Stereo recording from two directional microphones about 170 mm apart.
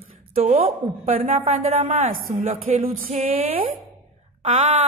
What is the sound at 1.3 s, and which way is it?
A woman's voice, 50° right (ahead or behind).